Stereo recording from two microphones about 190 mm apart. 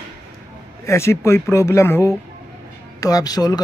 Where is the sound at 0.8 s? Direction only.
15° left (ahead or behind).